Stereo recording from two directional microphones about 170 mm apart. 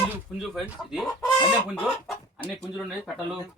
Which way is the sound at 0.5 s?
Centre (ahead or behind).